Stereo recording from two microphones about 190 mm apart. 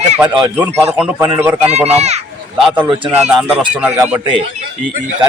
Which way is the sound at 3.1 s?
5° right (ahead or behind).